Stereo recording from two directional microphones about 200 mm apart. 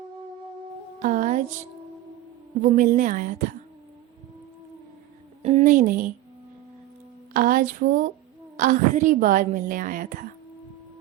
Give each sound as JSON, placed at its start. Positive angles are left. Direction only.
{"t": 1.0, "sound": "music", "side_deg": -40}
{"t": 2.6, "sound": "a woman's voice", "side_deg": -40}
{"t": 5.4, "sound": "a woman's voice", "side_deg": -35}
{"t": 7.3, "sound": "a woman's voice", "side_deg": -45}